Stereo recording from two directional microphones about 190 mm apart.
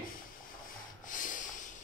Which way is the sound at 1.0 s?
45° left (ahead or behind).